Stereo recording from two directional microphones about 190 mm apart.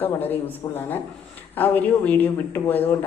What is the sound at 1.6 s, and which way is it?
A man's voice, 10° left (ahead or behind).